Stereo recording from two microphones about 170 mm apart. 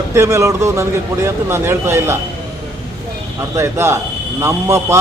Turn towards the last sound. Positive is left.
turn(degrees=-20)  # may be behind; listen again after turning